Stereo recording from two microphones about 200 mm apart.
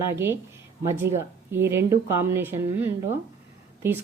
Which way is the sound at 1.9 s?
10° right (ahead or behind).